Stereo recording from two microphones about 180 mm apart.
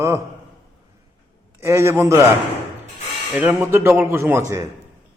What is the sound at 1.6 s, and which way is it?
Speech, 15° right (ahead or behind).